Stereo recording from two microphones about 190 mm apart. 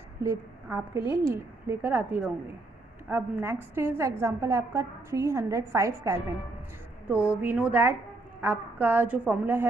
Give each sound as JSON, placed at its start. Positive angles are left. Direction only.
{"t": 0.2, "sound": "a woman's voice", "side_deg": -15}
{"t": 7.4, "sound": "a woman's voice", "side_deg": -10}